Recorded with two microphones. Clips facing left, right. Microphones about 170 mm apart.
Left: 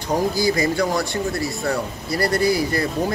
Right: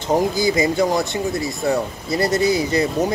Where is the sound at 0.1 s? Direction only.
20° right (ahead or behind).